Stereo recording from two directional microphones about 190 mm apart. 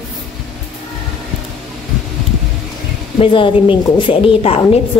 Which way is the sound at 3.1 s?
25° left (ahead or behind).